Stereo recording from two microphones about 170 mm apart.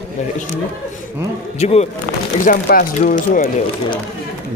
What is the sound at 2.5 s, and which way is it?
Speech, 50° left (ahead or behind).